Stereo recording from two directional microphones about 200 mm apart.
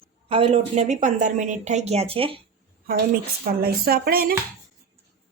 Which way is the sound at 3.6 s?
50° right (ahead or behind).